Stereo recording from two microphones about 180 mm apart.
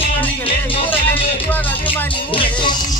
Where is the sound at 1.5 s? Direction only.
10° left (ahead or behind).